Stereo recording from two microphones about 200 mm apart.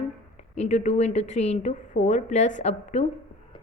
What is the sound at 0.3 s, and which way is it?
A woman's voice, 35° left (ahead or behind).